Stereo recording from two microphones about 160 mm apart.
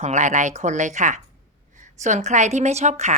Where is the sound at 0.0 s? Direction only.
45° right (ahead or behind).